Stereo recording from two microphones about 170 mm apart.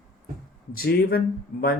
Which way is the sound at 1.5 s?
55° left (ahead or behind).